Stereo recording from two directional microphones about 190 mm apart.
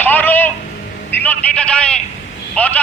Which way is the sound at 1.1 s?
10° left (ahead or behind).